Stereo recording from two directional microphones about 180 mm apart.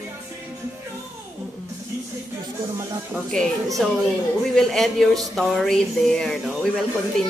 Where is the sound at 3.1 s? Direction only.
5° left (ahead or behind).